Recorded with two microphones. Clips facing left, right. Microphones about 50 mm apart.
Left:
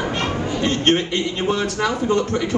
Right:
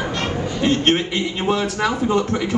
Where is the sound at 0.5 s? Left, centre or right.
Centre.